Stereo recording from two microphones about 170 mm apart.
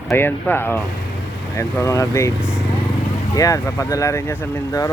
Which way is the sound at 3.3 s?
20° left (ahead or behind).